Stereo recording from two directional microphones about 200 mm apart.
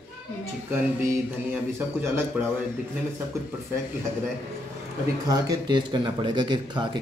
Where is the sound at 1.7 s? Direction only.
10° right (ahead or behind).